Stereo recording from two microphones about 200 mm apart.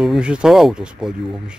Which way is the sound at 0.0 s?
5° right (ahead or behind).